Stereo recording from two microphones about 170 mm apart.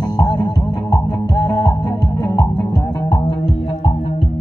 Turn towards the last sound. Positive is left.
turn(degrees=25)  # may be behind; listen again after turning